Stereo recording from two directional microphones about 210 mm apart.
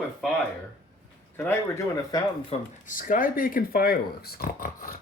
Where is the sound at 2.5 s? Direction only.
40° left (ahead or behind).